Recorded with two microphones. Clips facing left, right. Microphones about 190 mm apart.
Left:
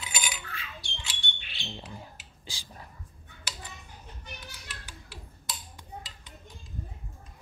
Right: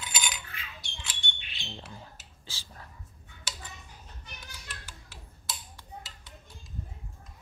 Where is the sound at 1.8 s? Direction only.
15° left (ahead or behind).